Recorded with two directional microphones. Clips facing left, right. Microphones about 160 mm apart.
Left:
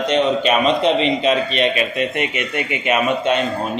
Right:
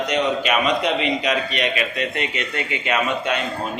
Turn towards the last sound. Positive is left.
turn(degrees=20)  # may be behind; listen again after turning